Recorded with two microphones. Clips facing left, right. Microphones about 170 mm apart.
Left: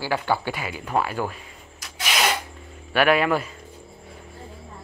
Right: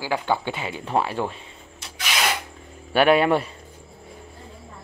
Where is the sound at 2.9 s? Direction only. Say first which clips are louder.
Right 2 dB; 30° right (ahead or behind).